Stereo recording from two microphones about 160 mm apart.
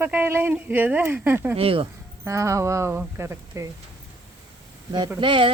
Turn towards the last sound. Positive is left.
turn(degrees=-30)  # may be behind; listen again after turning